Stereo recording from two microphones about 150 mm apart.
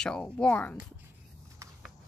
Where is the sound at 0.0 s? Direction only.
5° left (ahead or behind).